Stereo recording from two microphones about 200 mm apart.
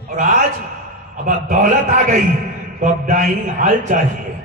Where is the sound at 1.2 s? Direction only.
40° right (ahead or behind).